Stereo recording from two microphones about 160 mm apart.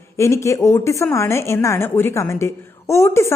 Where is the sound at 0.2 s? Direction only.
20° left (ahead or behind).